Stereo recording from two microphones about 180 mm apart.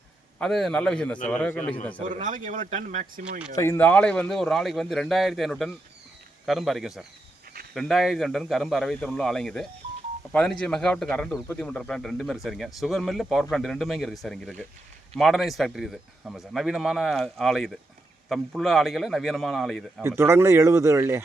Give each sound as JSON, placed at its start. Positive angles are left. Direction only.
{"t": 0.3, "sound": "a man's voice", "side_deg": 0}
{"t": 2.0, "sound": "speech", "side_deg": -45}
{"t": 3.5, "sound": "speech", "side_deg": 15}
{"t": 20.0, "sound": "speech", "side_deg": -15}